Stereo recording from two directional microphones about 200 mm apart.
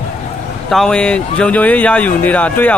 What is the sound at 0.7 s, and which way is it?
A man's voice, centre (ahead or behind).